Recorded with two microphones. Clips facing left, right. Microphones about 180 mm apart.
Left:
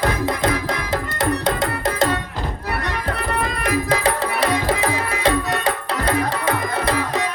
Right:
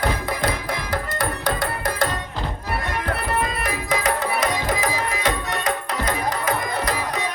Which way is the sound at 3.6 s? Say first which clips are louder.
Left 4 dB; 30° left (ahead or behind).